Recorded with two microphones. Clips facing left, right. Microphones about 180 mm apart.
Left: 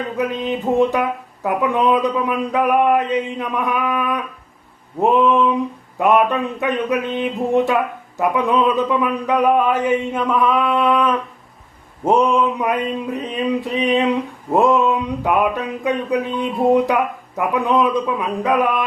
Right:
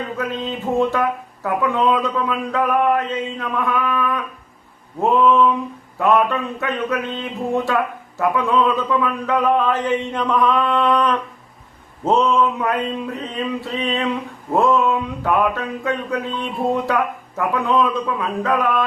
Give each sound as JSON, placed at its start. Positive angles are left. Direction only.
{"t": 0.2, "sound": "speech", "side_deg": 15}
{"t": 12.2, "sound": "speech", "side_deg": 15}